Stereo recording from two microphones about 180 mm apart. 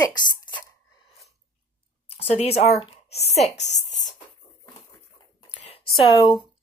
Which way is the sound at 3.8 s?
40° left (ahead or behind).